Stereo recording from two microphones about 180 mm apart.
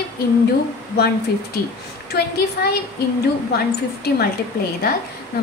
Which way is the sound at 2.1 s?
60° left (ahead or behind).